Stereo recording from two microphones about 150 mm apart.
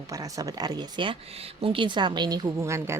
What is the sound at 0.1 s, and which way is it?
Speech, 25° right (ahead or behind).